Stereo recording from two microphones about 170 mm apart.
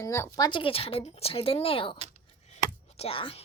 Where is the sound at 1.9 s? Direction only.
40° right (ahead or behind).